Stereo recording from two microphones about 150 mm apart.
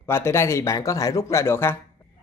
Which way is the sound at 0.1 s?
15° left (ahead or behind).